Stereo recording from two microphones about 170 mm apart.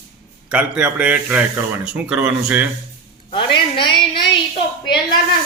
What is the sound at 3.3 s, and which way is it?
Speech, 30° left (ahead or behind).